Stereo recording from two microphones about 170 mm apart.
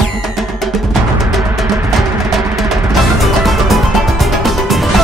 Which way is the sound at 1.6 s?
20° right (ahead or behind).